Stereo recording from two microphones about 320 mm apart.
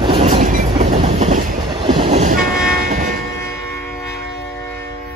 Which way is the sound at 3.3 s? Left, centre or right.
Centre.